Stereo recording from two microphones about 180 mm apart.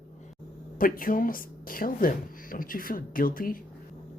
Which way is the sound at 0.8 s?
50° left (ahead or behind).